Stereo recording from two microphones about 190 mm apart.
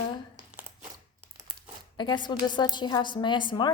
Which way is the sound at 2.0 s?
25° left (ahead or behind).